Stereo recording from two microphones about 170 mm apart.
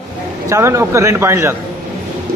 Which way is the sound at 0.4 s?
20° right (ahead or behind).